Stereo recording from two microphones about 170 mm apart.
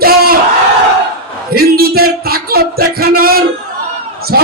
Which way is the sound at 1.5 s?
65° right (ahead or behind).